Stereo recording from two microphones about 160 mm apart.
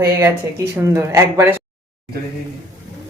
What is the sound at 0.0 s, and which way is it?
Speech, 20° right (ahead or behind).